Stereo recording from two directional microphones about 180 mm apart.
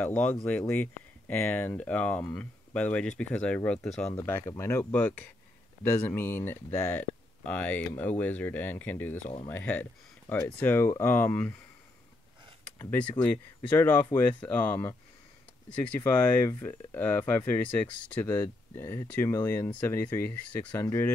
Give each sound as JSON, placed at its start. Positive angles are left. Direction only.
{"t": 0.0, "sound": "speech", "side_deg": 10}
{"t": 9.2, "sound": "speech", "side_deg": 30}
{"t": 9.5, "sound": "speech", "side_deg": 10}
{"t": 12.6, "sound": "speech", "side_deg": 10}
{"t": 13.1, "sound": "speech", "side_deg": 25}
{"t": 13.7, "sound": "speech", "side_deg": 10}
{"t": 16.0, "sound": "speech", "side_deg": 15}